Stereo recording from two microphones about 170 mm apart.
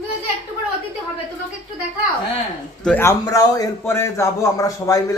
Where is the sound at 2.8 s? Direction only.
10° left (ahead or behind).